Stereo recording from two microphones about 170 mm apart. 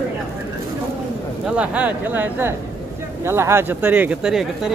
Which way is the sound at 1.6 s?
10° right (ahead or behind).